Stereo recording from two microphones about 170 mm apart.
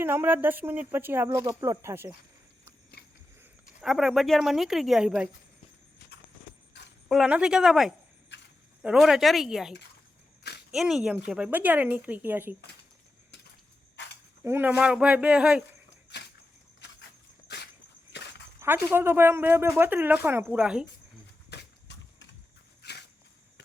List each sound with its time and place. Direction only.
0.0 s speech: 15° right (ahead or behind)
3.8 s speech: centre (ahead or behind)
7.1 s speech: 5° right (ahead or behind)
14.4 s speech: 15° right (ahead or behind)
17.5 s walk: 80° left
18.6 s speech: 10° right (ahead or behind)
21.5 s a sound: 90° left
22.8 s a sound: 75° left (ahead or behind)